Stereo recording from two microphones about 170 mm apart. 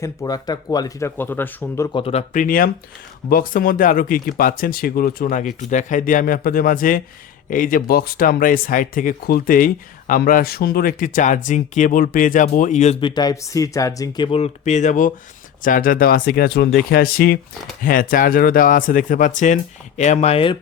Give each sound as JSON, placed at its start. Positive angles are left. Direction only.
{"t": 0.0, "sound": "speech", "side_deg": 20}
{"t": 1.9, "sound": "speech", "side_deg": 30}
{"t": 2.3, "sound": "speech", "side_deg": 50}
{"t": 13.0, "sound": "speech", "side_deg": 25}
{"t": 14.3, "sound": "speech", "side_deg": 35}